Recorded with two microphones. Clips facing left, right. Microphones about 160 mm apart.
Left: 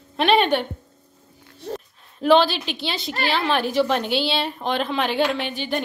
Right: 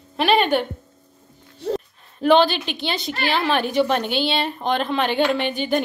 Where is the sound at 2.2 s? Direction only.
Centre (ahead or behind).